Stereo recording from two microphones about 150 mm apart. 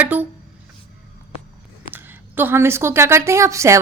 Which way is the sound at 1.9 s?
15° right (ahead or behind).